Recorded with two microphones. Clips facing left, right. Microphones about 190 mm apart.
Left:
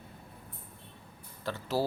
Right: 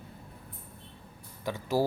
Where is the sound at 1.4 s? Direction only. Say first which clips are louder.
Right 3 dB; 15° right (ahead or behind).